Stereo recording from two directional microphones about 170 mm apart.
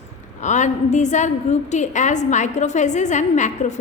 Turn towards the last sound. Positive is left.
turn(degrees=45)  # may be behind; listen again after turning